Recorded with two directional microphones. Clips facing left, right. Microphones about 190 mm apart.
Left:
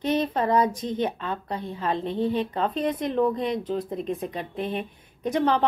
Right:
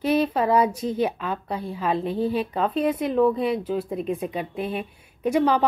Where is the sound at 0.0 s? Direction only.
10° right (ahead or behind).